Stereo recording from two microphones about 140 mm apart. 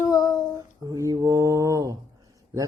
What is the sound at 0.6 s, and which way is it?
Speech, 25° right (ahead or behind).